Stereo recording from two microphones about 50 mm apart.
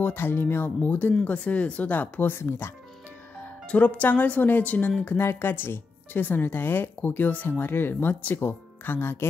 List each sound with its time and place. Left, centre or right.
0.0 s speech: left
1.2 s speech: left
2.3 s speech: left
3.6 s speech: left
5.0 s speech: left
7.4 s speech: left
8.4 s speech: left